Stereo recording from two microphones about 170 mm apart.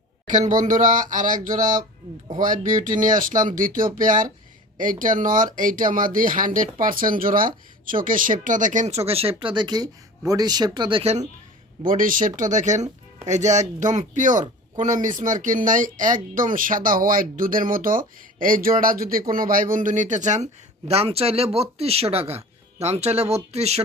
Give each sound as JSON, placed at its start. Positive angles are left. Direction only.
{"t": 0.3, "sound": "a man's voice", "side_deg": -45}
{"t": 11.9, "sound": "speech", "side_deg": -55}